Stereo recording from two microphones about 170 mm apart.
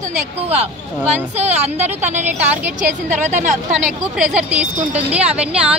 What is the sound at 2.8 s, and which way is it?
A woman's voice, 45° right (ahead or behind).